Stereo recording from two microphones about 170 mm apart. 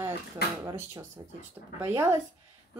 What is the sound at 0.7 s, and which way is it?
A woman's voice, 20° right (ahead or behind).